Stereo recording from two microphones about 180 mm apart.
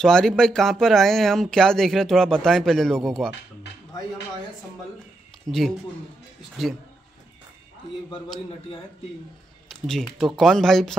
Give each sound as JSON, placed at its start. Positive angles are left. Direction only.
{"t": 0.0, "sound": "speech", "side_deg": 5}
{"t": 5.5, "sound": "speech", "side_deg": -20}
{"t": 9.7, "sound": "speech", "side_deg": 0}